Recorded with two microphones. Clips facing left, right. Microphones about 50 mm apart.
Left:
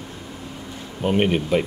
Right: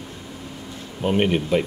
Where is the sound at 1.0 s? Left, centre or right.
Centre.